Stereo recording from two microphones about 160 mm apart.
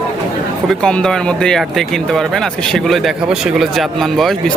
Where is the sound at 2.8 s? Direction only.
Centre (ahead or behind).